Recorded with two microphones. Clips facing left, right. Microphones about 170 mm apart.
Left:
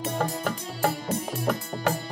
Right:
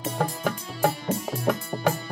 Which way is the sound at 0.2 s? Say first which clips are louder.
Right 1 dB; centre (ahead or behind).